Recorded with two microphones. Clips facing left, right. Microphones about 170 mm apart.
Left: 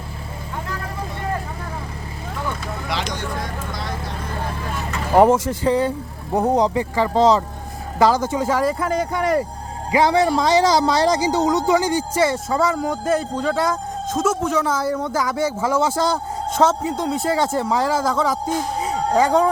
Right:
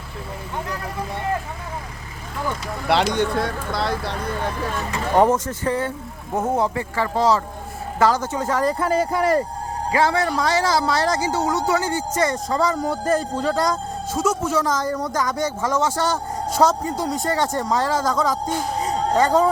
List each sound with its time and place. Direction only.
2.8 s speech: 65° right (ahead or behind)
5.1 s a man's voice: 10° left (ahead or behind)
9.9 s a man's voice: 15° left (ahead or behind); by 14.3 s 10° right (ahead or behind)
14.6 s a man's voice: 10° left (ahead or behind)
16.6 s a man's voice: centre (ahead or behind)